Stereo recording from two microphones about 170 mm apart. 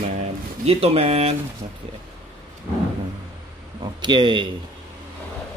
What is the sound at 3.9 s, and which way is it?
Speech, 30° right (ahead or behind).